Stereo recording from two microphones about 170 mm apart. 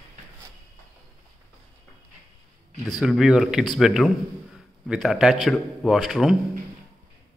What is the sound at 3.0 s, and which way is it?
A man's voice, 5° right (ahead or behind).